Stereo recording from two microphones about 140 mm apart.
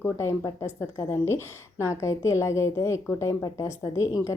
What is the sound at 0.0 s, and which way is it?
A woman's voice, 20° left (ahead or behind).